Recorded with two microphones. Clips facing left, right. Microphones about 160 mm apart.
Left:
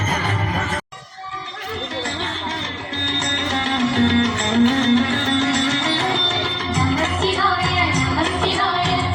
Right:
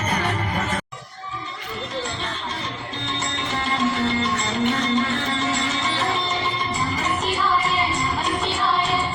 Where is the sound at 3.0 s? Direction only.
80° left.